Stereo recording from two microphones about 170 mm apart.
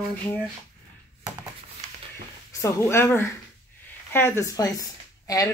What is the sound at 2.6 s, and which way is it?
A woman's voice, 15° left (ahead or behind).